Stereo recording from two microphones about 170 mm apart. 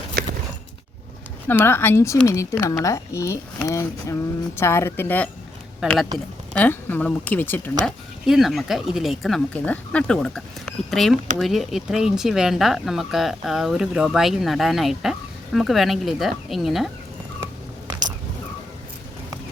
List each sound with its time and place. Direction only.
1.5 s speech: 10° left (ahead or behind)
5.8 s speech: 5° right (ahead or behind)
6.5 s speech: 10° left (ahead or behind)
7.9 s speech: centre (ahead or behind)